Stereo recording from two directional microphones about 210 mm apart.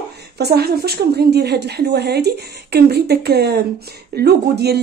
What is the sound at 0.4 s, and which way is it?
Speech, 50° right (ahead or behind).